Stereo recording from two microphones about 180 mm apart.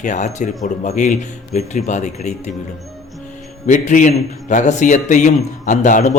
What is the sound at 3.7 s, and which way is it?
A man's voice, 45° left (ahead or behind).